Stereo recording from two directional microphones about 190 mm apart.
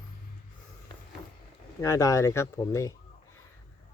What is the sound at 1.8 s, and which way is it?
Speech, 15° left (ahead or behind).